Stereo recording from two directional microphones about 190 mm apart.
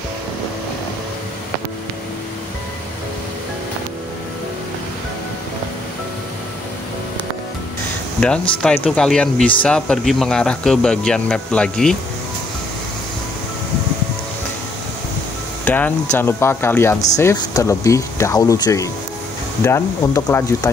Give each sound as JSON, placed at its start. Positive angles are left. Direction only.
{"t": 8.6, "sound": "speech", "side_deg": 5}
{"t": 15.6, "sound": "speech", "side_deg": 10}